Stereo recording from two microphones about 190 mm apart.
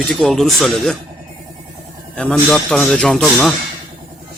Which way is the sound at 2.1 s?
5° left (ahead or behind).